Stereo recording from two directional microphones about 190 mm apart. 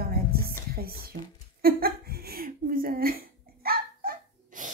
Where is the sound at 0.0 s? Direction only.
50° right (ahead or behind).